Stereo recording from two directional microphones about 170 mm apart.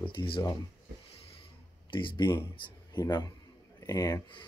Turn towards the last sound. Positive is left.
turn(degrees=25)  # may be behind; listen again after turning